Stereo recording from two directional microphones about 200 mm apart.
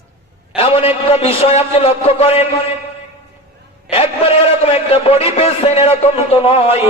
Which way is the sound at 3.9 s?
30° left (ahead or behind).